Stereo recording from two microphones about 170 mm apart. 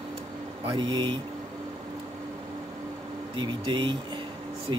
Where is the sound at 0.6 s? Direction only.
30° right (ahead or behind).